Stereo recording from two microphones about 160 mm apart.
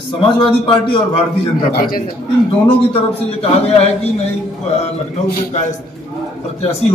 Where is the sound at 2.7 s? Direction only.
35° left (ahead or behind).